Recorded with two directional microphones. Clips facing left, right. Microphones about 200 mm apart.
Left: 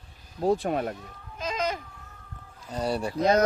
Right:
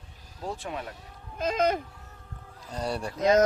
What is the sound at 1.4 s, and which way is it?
Speech, 55° right (ahead or behind).